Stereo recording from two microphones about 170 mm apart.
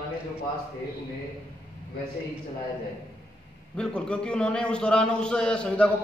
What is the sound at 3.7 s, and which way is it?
A man's voice, 5° left (ahead or behind).